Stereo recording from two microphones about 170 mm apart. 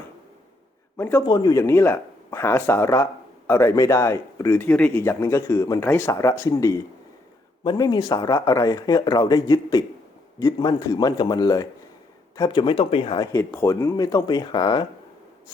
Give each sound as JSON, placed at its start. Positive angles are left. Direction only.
{"t": 0.9, "sound": "a man's voice", "side_deg": 15}
{"t": 1.2, "sound": "speech", "side_deg": 25}